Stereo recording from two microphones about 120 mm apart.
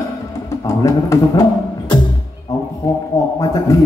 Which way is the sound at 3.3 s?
30° left (ahead or behind).